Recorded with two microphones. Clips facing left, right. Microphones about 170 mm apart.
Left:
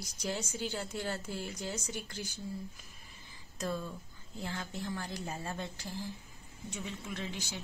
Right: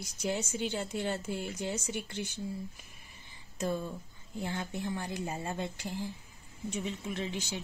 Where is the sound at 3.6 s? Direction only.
20° right (ahead or behind).